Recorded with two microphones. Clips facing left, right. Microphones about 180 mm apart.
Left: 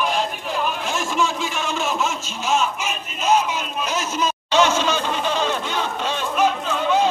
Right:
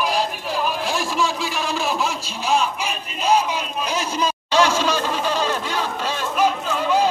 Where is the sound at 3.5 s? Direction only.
35° right (ahead or behind).